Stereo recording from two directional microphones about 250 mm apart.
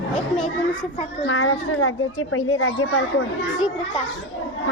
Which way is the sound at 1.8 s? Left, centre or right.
Left.